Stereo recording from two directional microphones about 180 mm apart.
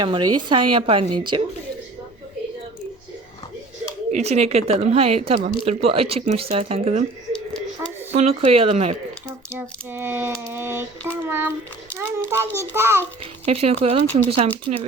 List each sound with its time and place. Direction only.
0.0 s speech: 25° right (ahead or behind)
4.1 s speech: 35° right (ahead or behind)
8.1 s speech: 35° right (ahead or behind)
9.5 s a sound: 10° right (ahead or behind)
13.4 s speech: 35° right (ahead or behind)